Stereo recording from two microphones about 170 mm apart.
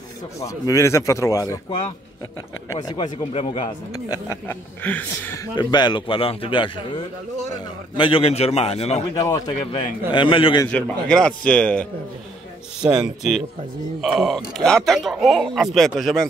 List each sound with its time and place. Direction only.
0.4 s a man's voice: 20° left (ahead or behind)
2.7 s a man's voice: 20° left (ahead or behind)
3.3 s a man's voice: 35° left (ahead or behind)
4.1 s speech: 15° left (ahead or behind)
5.6 s a man's voice: 25° left (ahead or behind)
8.0 s a man's voice: 35° left (ahead or behind)
10.7 s speech: 5° left (ahead or behind)
12.8 s speech: 5° right (ahead or behind)